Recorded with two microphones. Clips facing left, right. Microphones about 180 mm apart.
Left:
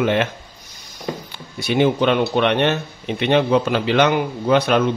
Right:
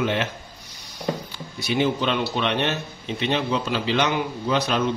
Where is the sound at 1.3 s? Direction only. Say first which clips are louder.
Left 8 dB; 55° left (ahead or behind).